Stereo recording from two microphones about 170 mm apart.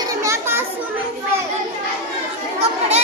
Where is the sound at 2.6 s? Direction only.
40° right (ahead or behind).